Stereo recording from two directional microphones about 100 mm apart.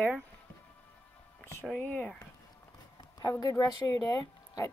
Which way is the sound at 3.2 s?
40° left (ahead or behind).